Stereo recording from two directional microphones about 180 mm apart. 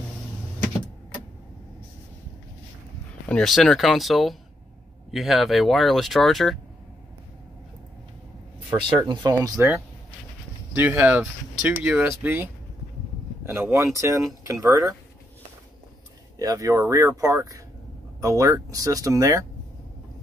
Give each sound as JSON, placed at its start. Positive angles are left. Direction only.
{"t": 3.3, "sound": "speech", "side_deg": 5}
{"t": 8.6, "sound": "speech", "side_deg": -25}
{"t": 13.5, "sound": "speech", "side_deg": -15}
{"t": 16.3, "sound": "speech", "side_deg": -20}